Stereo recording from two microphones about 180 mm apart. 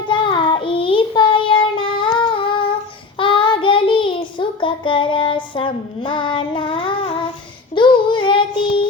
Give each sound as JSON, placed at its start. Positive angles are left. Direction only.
{"t": 0.1, "sound": "child singing", "side_deg": 25}